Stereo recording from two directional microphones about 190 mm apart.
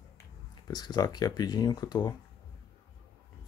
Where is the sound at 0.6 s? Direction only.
20° left (ahead or behind).